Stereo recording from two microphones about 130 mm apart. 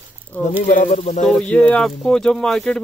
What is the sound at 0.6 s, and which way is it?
Speech, 70° left (ahead or behind).